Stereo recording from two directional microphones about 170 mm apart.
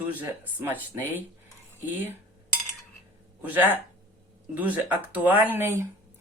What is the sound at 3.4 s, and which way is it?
Speech, 10° right (ahead or behind).